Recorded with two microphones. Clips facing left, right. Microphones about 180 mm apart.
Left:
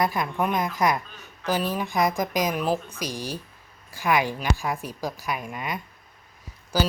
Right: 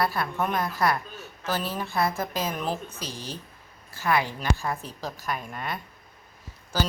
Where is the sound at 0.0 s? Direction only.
15° left (ahead or behind).